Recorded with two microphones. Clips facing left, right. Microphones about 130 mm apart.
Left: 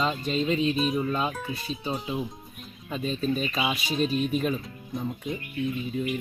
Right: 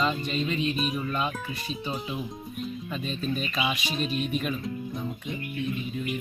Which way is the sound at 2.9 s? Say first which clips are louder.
Left 5 dB; 35° left (ahead or behind).